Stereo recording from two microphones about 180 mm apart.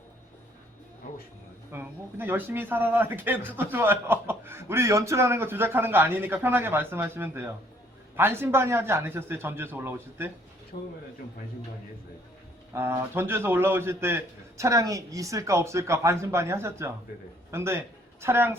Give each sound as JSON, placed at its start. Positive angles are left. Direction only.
{"t": 1.7, "sound": "a man's voice", "side_deg": -10}
{"t": 12.7, "sound": "a man's voice", "side_deg": -15}